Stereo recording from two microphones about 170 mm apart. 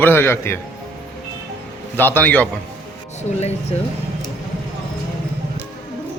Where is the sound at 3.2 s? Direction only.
40° left (ahead or behind).